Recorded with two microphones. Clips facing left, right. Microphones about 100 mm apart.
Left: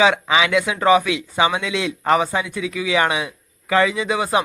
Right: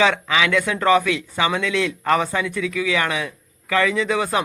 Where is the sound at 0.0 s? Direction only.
20° left (ahead or behind).